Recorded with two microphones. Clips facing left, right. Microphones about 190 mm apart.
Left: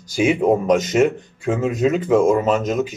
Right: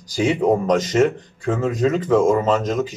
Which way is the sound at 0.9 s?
10° left (ahead or behind).